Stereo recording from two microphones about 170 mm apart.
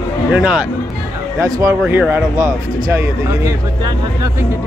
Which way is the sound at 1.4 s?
20° right (ahead or behind).